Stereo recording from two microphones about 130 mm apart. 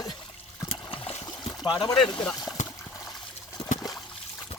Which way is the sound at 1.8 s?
30° left (ahead or behind).